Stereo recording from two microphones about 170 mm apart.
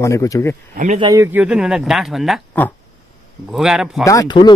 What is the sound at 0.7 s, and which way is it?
Speech, 50° right (ahead or behind).